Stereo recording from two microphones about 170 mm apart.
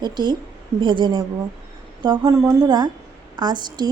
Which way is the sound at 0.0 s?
25° right (ahead or behind).